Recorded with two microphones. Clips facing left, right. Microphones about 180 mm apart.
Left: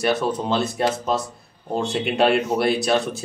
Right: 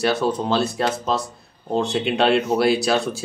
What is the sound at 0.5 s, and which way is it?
Speech, 25° left (ahead or behind).